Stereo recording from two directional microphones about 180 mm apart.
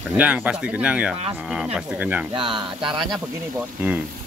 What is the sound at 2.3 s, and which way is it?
Speech, 25° right (ahead or behind).